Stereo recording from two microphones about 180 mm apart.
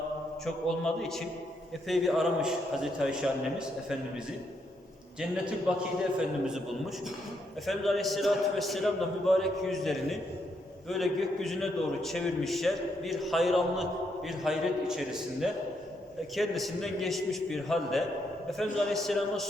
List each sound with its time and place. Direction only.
0.4 s a man's voice: 5° left (ahead or behind)
5.7 s a man's voice: 5° right (ahead or behind)